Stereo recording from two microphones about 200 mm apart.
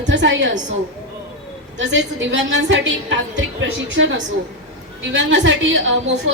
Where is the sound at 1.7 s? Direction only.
65° right (ahead or behind).